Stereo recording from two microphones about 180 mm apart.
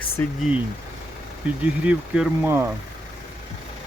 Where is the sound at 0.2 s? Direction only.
10° left (ahead or behind).